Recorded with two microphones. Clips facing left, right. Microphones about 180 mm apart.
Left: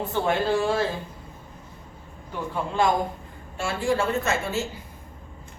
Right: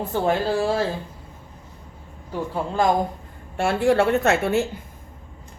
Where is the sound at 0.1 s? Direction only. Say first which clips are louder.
Right 2 dB; 35° right (ahead or behind).